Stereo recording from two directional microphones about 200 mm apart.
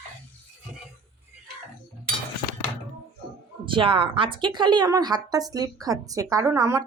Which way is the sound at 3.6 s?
25° right (ahead or behind).